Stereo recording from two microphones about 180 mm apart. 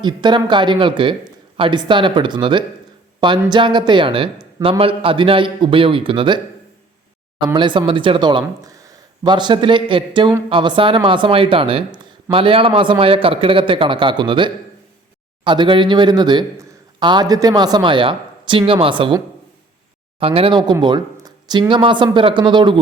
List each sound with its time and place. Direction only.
0.0 s speech: 25° right (ahead or behind)
7.4 s speech: 25° right (ahead or behind)